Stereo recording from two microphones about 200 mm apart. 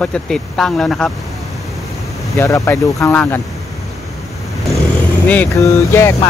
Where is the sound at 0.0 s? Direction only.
5° left (ahead or behind).